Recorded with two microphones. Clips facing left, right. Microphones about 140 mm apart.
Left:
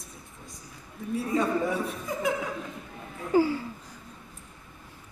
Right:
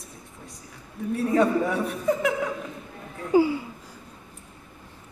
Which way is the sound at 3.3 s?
15° right (ahead or behind).